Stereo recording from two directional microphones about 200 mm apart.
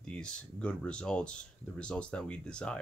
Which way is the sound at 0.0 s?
5° left (ahead or behind).